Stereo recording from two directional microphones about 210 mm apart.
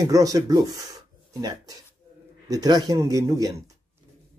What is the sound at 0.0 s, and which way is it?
Speech, 15° right (ahead or behind).